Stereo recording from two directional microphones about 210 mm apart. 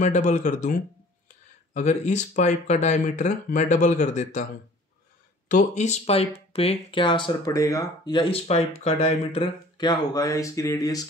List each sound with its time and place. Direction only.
0.0 s speech: 35° left (ahead or behind)
5.5 s speech: 35° left (ahead or behind); by 11.1 s 15° left (ahead or behind)